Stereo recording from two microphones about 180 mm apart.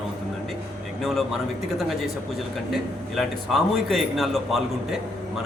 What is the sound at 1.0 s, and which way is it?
A man's voice, centre (ahead or behind).